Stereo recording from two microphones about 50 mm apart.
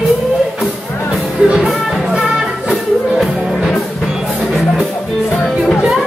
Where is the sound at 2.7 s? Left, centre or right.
Centre.